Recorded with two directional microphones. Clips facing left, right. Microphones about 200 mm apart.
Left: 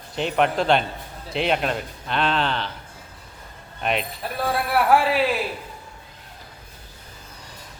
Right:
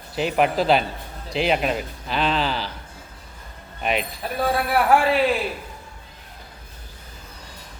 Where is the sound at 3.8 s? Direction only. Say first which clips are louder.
Right 1 dB; centre (ahead or behind).